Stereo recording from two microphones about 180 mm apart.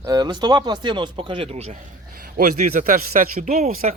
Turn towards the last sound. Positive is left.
turn(degrees=-50)  # may be behind; listen again after turning